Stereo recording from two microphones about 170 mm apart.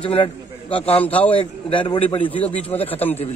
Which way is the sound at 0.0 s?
30° left (ahead or behind).